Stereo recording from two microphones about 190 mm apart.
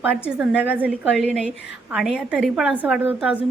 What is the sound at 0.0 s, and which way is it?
A woman's voice, 5° right (ahead or behind).